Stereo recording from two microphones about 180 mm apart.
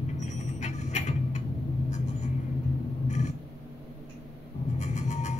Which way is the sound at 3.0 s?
40° left (ahead or behind).